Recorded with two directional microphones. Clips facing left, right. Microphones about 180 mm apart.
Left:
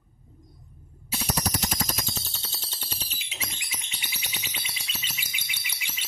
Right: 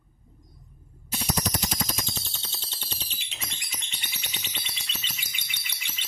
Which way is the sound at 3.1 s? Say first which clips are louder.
Left 2 dB; 10° left (ahead or behind).